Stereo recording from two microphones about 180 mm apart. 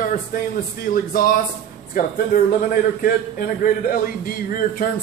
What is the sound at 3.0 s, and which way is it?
A man's voice, 50° left (ahead or behind).